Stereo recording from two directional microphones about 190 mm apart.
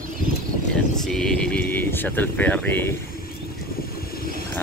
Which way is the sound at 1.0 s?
Centre (ahead or behind).